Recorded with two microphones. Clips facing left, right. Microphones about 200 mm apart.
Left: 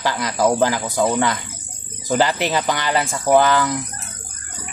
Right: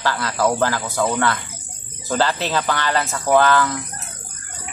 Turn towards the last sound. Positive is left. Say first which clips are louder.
# left 1 dB
turn(degrees=15)  # may be behind; listen again after turning